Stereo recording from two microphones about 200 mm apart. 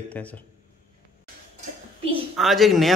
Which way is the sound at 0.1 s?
5° left (ahead or behind).